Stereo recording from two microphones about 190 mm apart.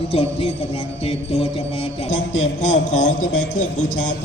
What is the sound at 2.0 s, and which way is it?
Speech, 90° left.